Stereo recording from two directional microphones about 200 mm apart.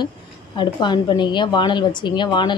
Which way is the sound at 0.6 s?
20° left (ahead or behind).